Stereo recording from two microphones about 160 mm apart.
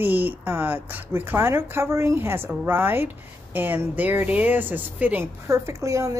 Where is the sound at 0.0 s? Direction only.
10° right (ahead or behind).